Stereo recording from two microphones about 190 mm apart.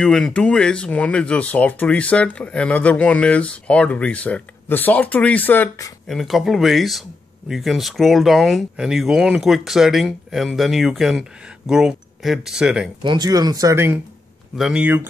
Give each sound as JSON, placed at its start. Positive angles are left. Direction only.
{"t": 0.0, "sound": "speech", "side_deg": 5}
{"t": 6.0, "sound": "speech", "side_deg": 0}
{"t": 13.0, "sound": "speech", "side_deg": -20}
{"t": 14.5, "sound": "speech", "side_deg": -5}